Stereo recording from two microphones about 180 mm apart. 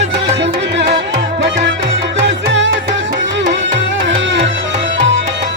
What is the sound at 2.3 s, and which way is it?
Music, 85° right.